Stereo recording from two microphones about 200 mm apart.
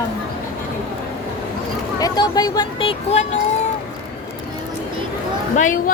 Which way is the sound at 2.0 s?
20° left (ahead or behind).